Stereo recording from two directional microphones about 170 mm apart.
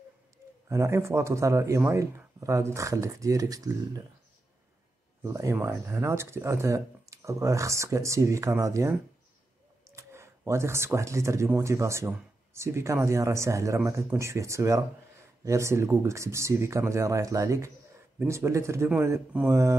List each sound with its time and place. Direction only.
0.7 s speech: 15° right (ahead or behind)
5.2 s speech: 20° right (ahead or behind)